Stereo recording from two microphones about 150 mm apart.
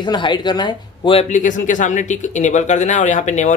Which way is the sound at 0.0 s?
30° left (ahead or behind).